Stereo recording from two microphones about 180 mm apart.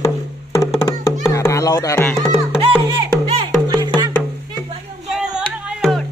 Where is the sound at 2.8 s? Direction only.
30° right (ahead or behind).